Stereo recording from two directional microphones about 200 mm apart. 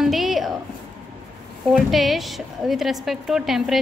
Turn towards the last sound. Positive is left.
turn(degrees=0)  # may be behind; listen again after turning